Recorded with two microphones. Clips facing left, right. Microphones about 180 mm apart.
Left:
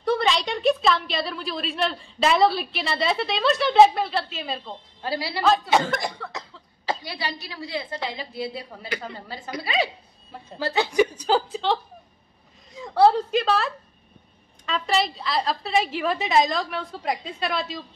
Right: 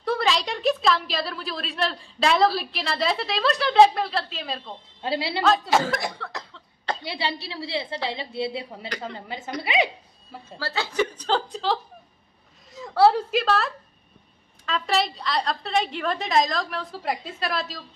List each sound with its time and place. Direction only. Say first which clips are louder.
0.0 s a woman's voice: left 2 dB; centre (ahead or behind)
5.0 s a woman's voice: right 2 dB; 25° right (ahead or behind)
5.4 s speech: left 1 dB; centre (ahead or behind)
7.0 s a woman's voice: right 3 dB; 25° right (ahead or behind)
8.9 s a woman's voice: left 3 dB; 5° left (ahead or behind)
9.3 s a woman's voice: right 1 dB; 20° right (ahead or behind)
10.6 s a woman's voice: left 5 dB; 20° left (ahead or behind); by 17.8 s centre (ahead or behind)